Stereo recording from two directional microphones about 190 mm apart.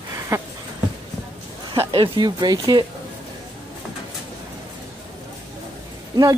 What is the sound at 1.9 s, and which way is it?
Speech, 25° right (ahead or behind).